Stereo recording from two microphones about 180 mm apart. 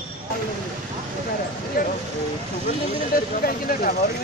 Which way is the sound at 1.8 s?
50° left (ahead or behind).